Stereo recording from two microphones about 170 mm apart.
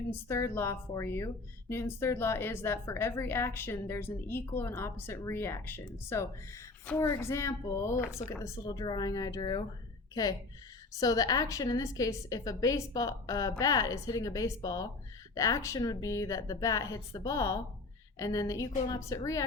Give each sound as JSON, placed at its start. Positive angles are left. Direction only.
{"t": 0.1, "sound": "a woman's voice", "side_deg": 15}
{"t": 11.0, "sound": "a woman's voice", "side_deg": 20}